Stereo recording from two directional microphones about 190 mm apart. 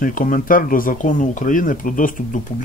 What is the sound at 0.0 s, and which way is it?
Speech, 45° left (ahead or behind).